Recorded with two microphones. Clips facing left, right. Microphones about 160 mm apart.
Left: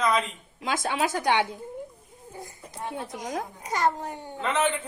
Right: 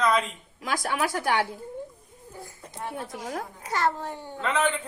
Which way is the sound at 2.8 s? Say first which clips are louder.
Left 1 dB; 20° left (ahead or behind).